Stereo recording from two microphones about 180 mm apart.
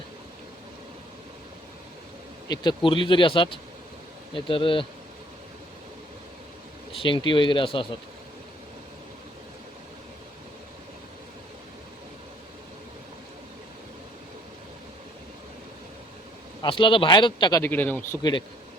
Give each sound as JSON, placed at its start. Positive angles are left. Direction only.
{"t": 2.5, "sound": "speech", "side_deg": 25}
{"t": 6.9, "sound": "speech", "side_deg": 30}
{"t": 16.6, "sound": "speech", "side_deg": 30}
{"t": 17.6, "sound": "speech", "side_deg": 10}
{"t": 18.2, "sound": "speech", "side_deg": 25}